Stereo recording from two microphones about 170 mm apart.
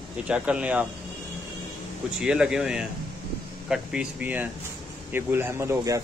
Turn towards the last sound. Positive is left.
turn(degrees=-15)  # may be behind; listen again after turning